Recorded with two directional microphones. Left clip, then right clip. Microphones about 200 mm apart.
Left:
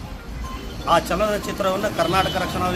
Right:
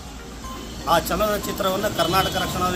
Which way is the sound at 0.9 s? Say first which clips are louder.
Left 1 dB; 15° left (ahead or behind).